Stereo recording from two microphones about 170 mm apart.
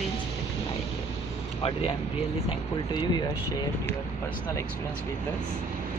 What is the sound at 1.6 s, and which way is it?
Speech, 35° left (ahead or behind).